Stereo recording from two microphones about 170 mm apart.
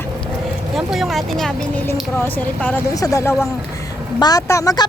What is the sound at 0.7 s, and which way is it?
Speech, centre (ahead or behind).